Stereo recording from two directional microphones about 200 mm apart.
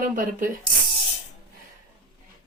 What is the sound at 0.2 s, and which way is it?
Speech, 40° right (ahead or behind).